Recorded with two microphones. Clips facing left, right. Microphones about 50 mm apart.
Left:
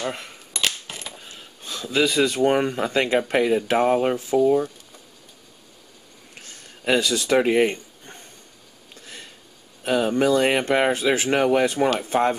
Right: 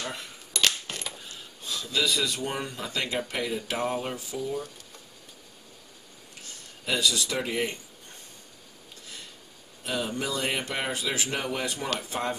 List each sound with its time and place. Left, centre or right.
0.0 s speech: left
0.6 s coin: centre
1.7 s speech: left
6.8 s speech: left
9.8 s speech: left